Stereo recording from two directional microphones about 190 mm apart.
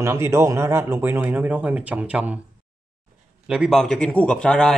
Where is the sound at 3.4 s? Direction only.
5° right (ahead or behind).